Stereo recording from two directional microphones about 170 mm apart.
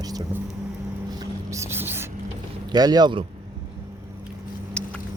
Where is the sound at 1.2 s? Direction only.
15° right (ahead or behind).